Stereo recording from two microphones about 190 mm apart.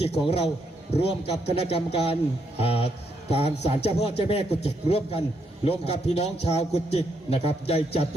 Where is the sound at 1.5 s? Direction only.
30° left (ahead or behind).